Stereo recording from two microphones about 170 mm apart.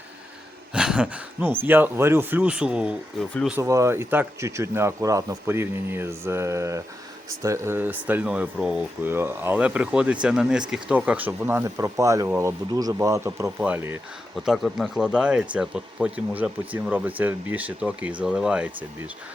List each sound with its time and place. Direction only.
0.7 s speech: 5° right (ahead or behind)
3.6 s speech: 20° right (ahead or behind)
14.3 s speech: centre (ahead or behind)